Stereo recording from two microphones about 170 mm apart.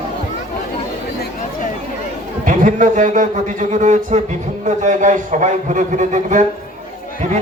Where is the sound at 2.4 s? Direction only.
50° right (ahead or behind).